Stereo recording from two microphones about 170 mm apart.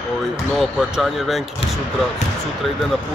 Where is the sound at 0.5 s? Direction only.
Centre (ahead or behind).